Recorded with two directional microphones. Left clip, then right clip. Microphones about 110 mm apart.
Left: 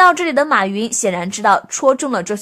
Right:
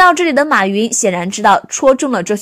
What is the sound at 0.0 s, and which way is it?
A woman's voice, 45° right (ahead or behind).